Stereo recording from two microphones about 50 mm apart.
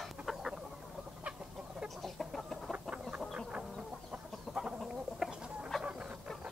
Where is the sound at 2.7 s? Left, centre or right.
Right.